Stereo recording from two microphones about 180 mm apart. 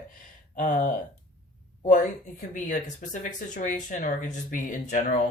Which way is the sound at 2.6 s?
45° left (ahead or behind).